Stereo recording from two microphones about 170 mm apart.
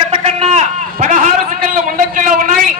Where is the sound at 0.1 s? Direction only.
35° right (ahead or behind).